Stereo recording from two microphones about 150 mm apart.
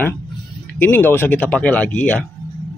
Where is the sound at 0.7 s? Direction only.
15° left (ahead or behind).